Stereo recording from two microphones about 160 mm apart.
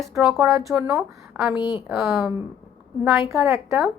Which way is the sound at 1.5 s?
30° left (ahead or behind).